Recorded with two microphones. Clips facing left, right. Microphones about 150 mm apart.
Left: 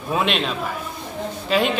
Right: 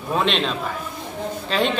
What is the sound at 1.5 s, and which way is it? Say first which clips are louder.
Speech: left 2 dB; 5° left (ahead or behind).